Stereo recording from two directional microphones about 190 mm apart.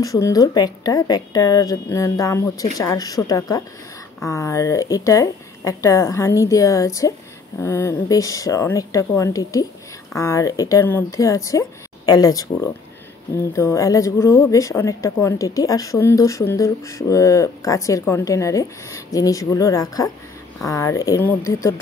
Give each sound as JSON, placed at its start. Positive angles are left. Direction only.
{"t": 0.0, "sound": "a woman's voice", "side_deg": 20}